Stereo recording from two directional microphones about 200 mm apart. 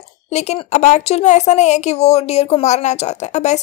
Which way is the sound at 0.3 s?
30° left (ahead or behind).